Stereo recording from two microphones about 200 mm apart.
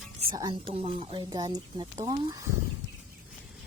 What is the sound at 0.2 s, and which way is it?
Speech, 20° right (ahead or behind).